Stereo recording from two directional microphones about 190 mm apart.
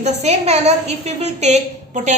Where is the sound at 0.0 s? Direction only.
35° right (ahead or behind).